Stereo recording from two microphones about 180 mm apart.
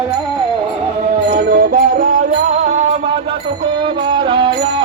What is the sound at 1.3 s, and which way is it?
Music, 55° right (ahead or behind).